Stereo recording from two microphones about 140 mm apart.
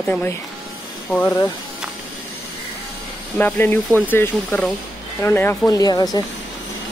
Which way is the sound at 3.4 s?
15° left (ahead or behind).